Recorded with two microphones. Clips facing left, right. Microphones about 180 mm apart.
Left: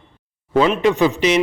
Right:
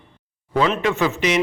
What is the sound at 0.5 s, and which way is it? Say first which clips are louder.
Speech: left 4 dB; 20° left (ahead or behind).